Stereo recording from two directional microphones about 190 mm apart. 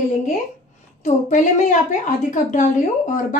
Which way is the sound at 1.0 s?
40° left (ahead or behind).